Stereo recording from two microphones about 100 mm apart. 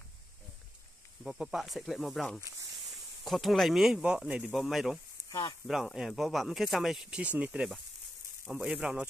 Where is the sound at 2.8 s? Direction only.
Centre (ahead or behind).